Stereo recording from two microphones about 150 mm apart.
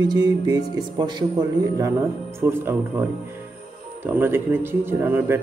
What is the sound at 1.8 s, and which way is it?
Speech, 20° right (ahead or behind).